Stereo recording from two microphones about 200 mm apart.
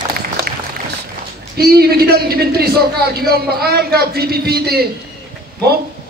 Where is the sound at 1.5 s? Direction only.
50° right (ahead or behind).